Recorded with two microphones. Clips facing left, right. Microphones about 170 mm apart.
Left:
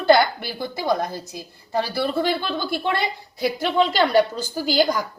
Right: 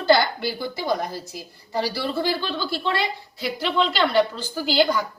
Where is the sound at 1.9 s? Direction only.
50° left (ahead or behind).